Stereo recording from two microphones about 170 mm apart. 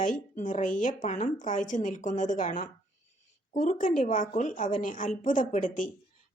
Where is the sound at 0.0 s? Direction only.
50° left (ahead or behind).